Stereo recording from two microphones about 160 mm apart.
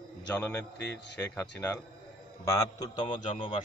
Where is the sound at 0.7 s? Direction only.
90° left.